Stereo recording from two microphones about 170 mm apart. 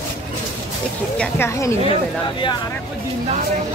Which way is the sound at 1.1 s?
10° left (ahead or behind).